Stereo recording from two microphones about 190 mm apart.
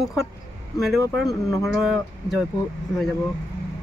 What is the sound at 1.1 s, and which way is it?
Speech, centre (ahead or behind).